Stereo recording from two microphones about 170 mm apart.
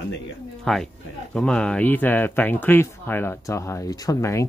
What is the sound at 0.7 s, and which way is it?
Speech, centre (ahead or behind).